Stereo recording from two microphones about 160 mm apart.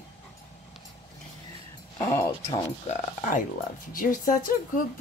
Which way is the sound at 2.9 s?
55° left (ahead or behind).